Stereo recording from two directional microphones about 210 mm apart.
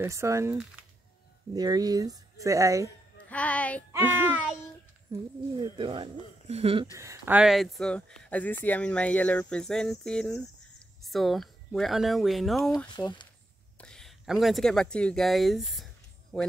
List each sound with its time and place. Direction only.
0.0 s speech: 15° right (ahead or behind)
3.3 s speech: 5° left (ahead or behind)
3.9 s speech: 10° right (ahead or behind)
5.1 s speech: 20° right (ahead or behind)
7.0 s speech: 10° right (ahead or behind)
12.7 s speech: 20° left (ahead or behind)
13.7 s speech: 5° left (ahead or behind)